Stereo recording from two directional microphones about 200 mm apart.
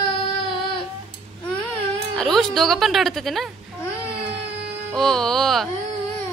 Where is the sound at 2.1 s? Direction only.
Centre (ahead or behind).